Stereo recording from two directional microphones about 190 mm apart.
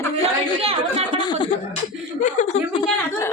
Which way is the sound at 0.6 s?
30° right (ahead or behind).